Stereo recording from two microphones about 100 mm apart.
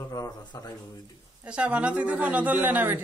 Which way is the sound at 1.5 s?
10° right (ahead or behind).